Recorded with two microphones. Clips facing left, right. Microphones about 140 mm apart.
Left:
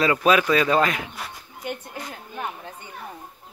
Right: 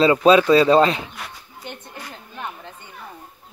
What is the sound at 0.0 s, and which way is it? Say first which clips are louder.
Speech: right 5 dB; 25° right (ahead or behind).